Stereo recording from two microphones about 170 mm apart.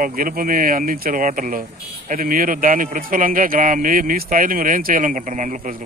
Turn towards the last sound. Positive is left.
turn(degrees=-50)  # may be behind; listen again after turning